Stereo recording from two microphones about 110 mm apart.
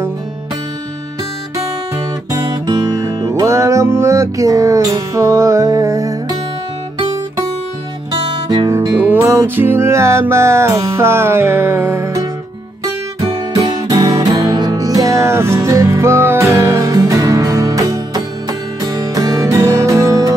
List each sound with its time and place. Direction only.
2.3 s music: 35° right (ahead or behind)
8.5 s music: 40° right (ahead or behind)
8.9 s music: 15° right (ahead or behind)
12.8 s music: 35° right (ahead or behind)